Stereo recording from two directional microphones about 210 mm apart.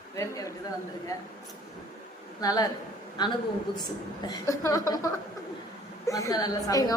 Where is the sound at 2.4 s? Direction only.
20° left (ahead or behind).